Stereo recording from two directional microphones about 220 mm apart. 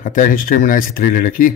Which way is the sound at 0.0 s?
35° left (ahead or behind).